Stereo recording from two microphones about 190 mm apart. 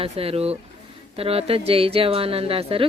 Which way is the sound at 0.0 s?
30° right (ahead or behind).